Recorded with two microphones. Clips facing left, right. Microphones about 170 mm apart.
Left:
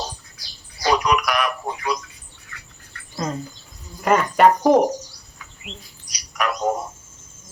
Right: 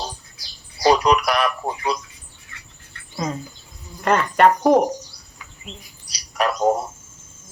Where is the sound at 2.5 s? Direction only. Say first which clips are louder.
Left 2 dB; 25° right (ahead or behind).